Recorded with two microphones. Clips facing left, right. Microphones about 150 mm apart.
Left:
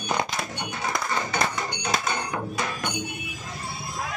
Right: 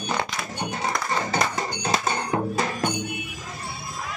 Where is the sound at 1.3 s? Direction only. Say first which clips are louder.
Right 2 dB; 30° right (ahead or behind).